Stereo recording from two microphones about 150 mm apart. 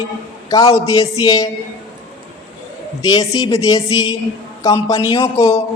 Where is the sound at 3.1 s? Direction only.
25° left (ahead or behind).